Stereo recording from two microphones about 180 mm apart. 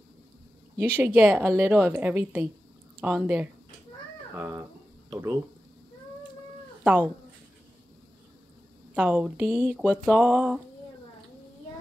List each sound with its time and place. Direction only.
0.7 s a woman's voice: 10° right (ahead or behind)
6.8 s speech: 5° right (ahead or behind)
8.9 s a woman's voice: 5° right (ahead or behind)